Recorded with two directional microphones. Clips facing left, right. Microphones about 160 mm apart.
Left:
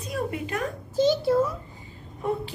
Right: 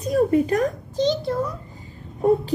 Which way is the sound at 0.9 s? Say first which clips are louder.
Left 2 dB; 5° left (ahead or behind).